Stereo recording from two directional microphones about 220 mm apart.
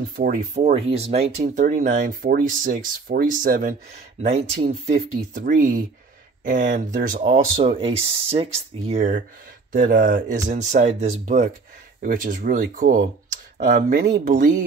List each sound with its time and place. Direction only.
0.1 s speech: 40° right (ahead or behind)
4.2 s speech: 30° right (ahead or behind)